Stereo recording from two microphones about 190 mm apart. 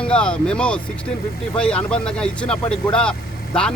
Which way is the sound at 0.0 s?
5° left (ahead or behind).